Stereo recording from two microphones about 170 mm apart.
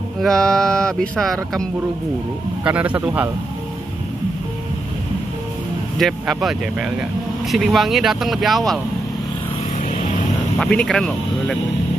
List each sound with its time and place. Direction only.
0.2 s speech: 5° left (ahead or behind)
2.6 s speech: 10° right (ahead or behind)
5.9 s speech: centre (ahead or behind)
10.6 s speech: 5° left (ahead or behind)